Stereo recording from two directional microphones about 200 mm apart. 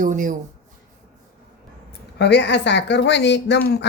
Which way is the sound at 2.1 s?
60° left (ahead or behind).